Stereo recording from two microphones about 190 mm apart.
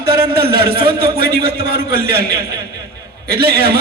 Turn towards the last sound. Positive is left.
turn(degrees=-55)  # may be behind; listen again after turning